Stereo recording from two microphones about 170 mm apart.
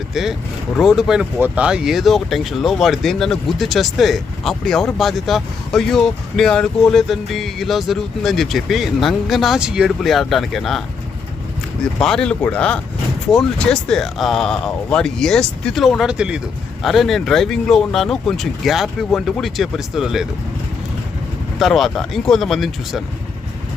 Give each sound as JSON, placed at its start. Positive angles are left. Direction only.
{"t": 0.1, "sound": "speech", "side_deg": 0}
{"t": 11.9, "sound": "speech", "side_deg": 5}
{"t": 21.6, "sound": "speech", "side_deg": 0}